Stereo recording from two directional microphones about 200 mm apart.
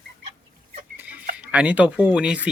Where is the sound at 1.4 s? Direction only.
5° right (ahead or behind).